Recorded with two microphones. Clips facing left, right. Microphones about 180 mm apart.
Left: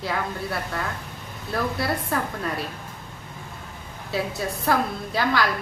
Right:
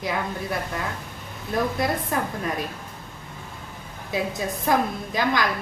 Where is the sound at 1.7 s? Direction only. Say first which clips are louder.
Right 1 dB; 20° right (ahead or behind).